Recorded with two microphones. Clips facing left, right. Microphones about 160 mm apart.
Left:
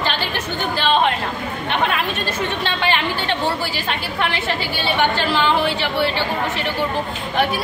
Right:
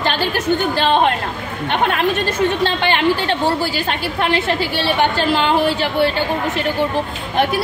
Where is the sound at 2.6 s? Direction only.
40° right (ahead or behind).